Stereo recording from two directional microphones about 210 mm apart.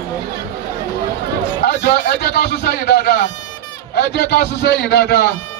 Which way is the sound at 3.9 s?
50° left (ahead or behind).